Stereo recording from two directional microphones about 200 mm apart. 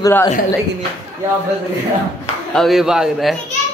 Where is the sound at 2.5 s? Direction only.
Centre (ahead or behind).